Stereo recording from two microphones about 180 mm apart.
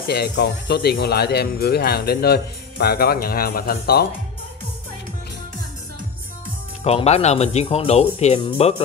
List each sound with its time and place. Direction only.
0.0 s speech: 65° left (ahead or behind)
6.8 s speech: 35° left (ahead or behind)